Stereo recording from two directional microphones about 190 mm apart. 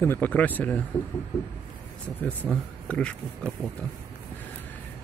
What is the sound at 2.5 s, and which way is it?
Speech, 5° left (ahead or behind).